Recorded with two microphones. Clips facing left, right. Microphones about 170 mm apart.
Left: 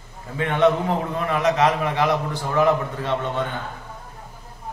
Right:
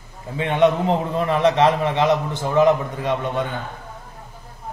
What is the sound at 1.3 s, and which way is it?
A man's voice, 30° right (ahead or behind).